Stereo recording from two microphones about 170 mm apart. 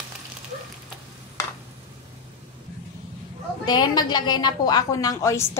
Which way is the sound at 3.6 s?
25° left (ahead or behind).